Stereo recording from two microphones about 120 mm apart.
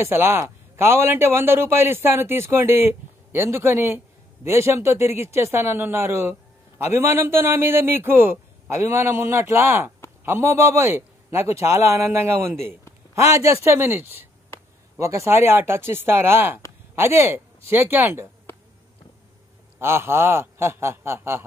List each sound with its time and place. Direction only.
0.0 s a man's voice: 20° right (ahead or behind)
19.8 s a man's voice: 20° right (ahead or behind)